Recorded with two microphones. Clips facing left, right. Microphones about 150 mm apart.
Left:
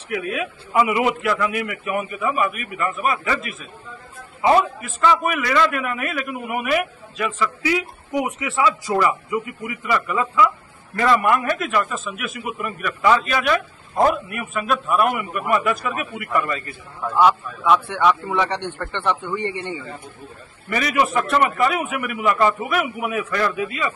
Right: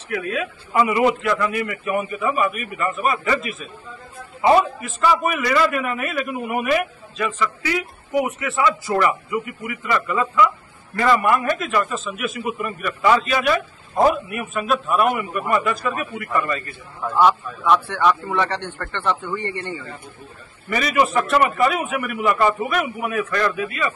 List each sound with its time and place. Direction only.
0.1 s a man's voice: 10° left (ahead or behind)
20.7 s a man's voice: centre (ahead or behind); by 23.9 s 15° left (ahead or behind)